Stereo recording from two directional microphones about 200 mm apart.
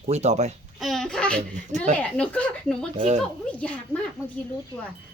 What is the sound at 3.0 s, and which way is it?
Speech, 35° right (ahead or behind).